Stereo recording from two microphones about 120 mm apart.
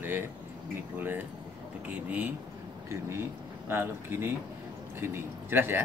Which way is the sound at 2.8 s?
20° right (ahead or behind).